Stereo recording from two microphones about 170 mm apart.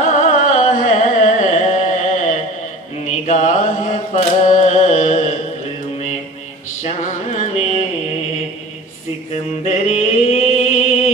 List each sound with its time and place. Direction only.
0.0 s carnatic music: 45° left (ahead or behind)
3.1 s mantra: 45° left (ahead or behind)
6.8 s music: 45° left (ahead or behind)
9.3 s music: 40° left (ahead or behind)